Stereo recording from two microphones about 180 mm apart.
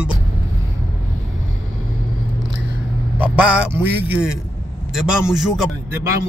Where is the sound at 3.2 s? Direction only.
5° right (ahead or behind).